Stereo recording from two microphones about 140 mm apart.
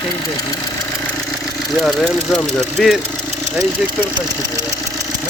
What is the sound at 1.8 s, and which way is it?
Speech, 5° left (ahead or behind).